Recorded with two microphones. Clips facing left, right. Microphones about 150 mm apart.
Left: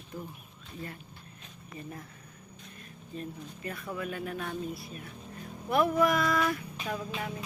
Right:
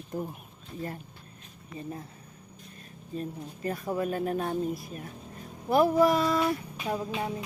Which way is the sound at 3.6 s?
40° right (ahead or behind).